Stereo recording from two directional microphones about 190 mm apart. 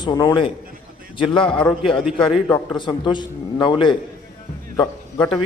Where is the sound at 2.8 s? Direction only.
25° left (ahead or behind).